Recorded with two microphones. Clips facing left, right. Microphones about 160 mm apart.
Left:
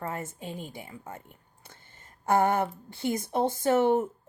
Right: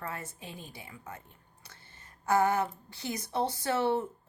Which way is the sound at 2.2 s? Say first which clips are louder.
Left 3 dB; 55° left (ahead or behind).